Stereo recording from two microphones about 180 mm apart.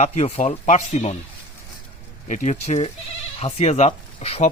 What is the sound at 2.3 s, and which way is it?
Speech, 45° left (ahead or behind).